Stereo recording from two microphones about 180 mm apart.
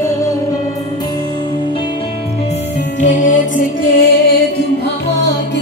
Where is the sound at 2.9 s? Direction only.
45° left (ahead or behind).